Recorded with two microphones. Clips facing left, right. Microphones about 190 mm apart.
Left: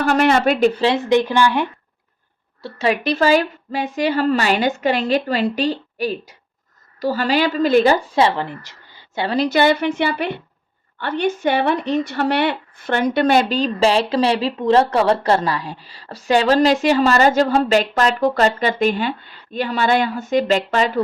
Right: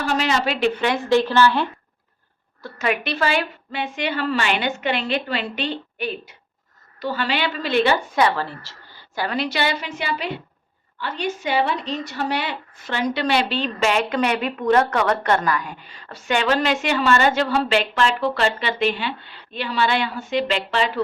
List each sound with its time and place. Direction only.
0.0 s speech: 55° left (ahead or behind)
1.0 s speech: 15° left (ahead or behind)
2.6 s speech: 30° left (ahead or behind)
8.1 s a woman's voice: 25° left (ahead or behind)
9.3 s a woman's voice: 45° left (ahead or behind)